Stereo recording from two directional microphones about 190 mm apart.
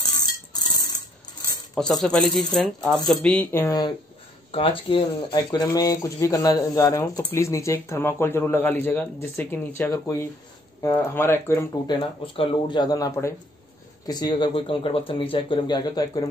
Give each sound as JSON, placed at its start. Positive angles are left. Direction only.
{"t": 0.5, "sound": "a sound", "side_deg": 20}
{"t": 1.8, "sound": "speech", "side_deg": 5}
{"t": 4.5, "sound": "speech", "side_deg": 30}
{"t": 11.9, "sound": "speech", "side_deg": 25}